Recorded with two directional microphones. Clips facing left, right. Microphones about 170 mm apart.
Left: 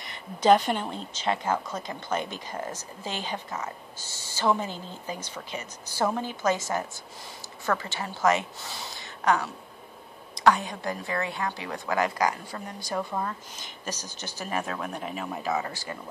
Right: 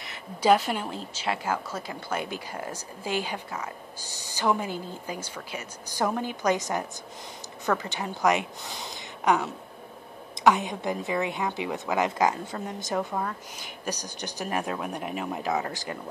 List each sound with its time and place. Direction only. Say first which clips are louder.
0.0 s a woman's voice: left 1 dB; 5° right (ahead or behind)
13.1 s a woman's voice: even; 5° right (ahead or behind)